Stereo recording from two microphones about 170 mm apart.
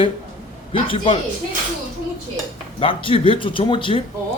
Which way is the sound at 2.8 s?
30° left (ahead or behind).